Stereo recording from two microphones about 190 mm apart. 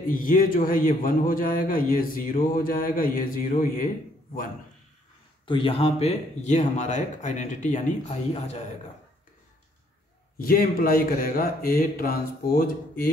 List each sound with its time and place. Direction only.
0.0 s speech: 45° left (ahead or behind)
5.5 s speech: 30° left (ahead or behind)
10.3 s speech: 50° left (ahead or behind)